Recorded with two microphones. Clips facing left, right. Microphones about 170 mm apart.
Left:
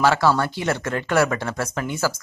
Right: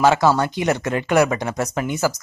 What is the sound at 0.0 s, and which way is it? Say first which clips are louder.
Speech: right 3 dB; 20° right (ahead or behind).